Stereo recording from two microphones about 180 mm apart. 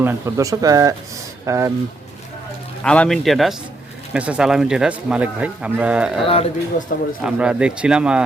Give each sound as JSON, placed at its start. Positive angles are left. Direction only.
{"t": 0.0, "sound": "speech", "side_deg": -15}
{"t": 2.8, "sound": "a man's voice", "side_deg": 5}
{"t": 6.2, "sound": "speech", "side_deg": 35}
{"t": 7.2, "sound": "a man's voice", "side_deg": -5}